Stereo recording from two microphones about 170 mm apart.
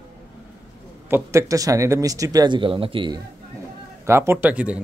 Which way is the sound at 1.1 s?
15° right (ahead or behind).